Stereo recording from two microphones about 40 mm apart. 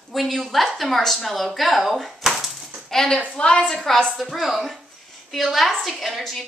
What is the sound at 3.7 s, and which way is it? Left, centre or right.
A woman's voice, centre.